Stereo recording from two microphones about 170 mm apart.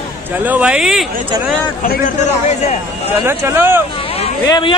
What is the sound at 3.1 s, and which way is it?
Speech, 15° right (ahead or behind).